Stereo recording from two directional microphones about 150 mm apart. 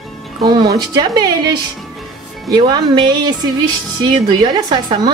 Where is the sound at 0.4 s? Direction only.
25° right (ahead or behind).